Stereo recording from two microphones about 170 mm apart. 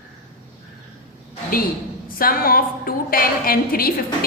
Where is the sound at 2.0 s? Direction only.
60° left (ahead or behind).